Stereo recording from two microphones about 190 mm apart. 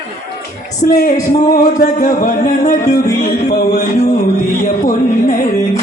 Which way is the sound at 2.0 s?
45° left (ahead or behind).